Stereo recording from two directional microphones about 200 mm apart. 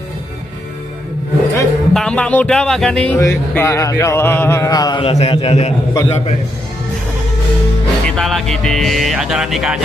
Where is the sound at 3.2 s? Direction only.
15° left (ahead or behind); by 5.7 s 30° left (ahead or behind).